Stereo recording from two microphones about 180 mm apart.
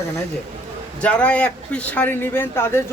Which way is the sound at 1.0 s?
5° left (ahead or behind).